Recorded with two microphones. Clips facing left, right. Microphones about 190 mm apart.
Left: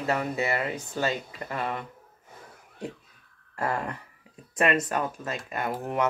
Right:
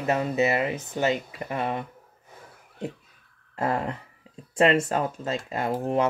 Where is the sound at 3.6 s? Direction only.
25° right (ahead or behind).